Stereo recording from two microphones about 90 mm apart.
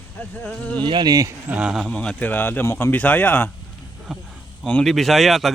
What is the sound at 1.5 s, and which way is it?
Speech, 15° right (ahead or behind).